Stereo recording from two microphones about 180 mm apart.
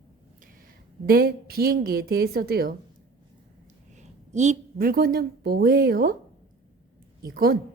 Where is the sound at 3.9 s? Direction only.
40° right (ahead or behind); by 6.1 s 55° right (ahead or behind).